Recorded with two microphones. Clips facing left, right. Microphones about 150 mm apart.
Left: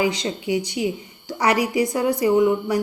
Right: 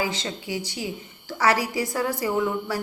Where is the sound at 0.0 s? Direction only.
15° left (ahead or behind).